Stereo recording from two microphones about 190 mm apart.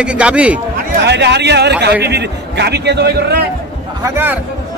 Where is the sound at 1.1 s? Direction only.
65° right (ahead or behind).